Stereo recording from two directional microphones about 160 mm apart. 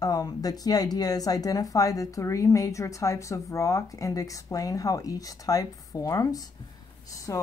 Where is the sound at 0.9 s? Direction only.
25° left (ahead or behind).